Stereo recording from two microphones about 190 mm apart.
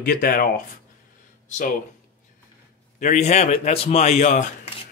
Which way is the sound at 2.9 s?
40° left (ahead or behind).